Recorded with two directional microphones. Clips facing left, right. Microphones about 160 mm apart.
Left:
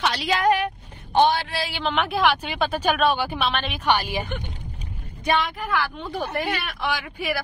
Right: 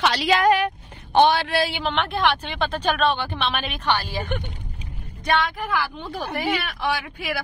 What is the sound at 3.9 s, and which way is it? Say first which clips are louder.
Speech: left 2 dB; 15° left (ahead or behind).